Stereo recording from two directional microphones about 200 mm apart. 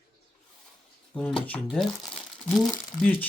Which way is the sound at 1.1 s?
5° left (ahead or behind).